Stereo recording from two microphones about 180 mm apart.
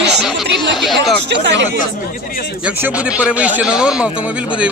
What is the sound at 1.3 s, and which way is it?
Speech, 80° right.